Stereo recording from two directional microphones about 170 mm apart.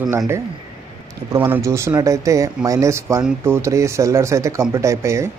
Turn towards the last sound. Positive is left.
turn(degrees=-15)  # may be behind; listen again after turning